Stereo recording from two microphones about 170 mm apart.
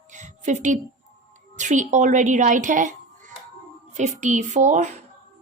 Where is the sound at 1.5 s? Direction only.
45° right (ahead or behind).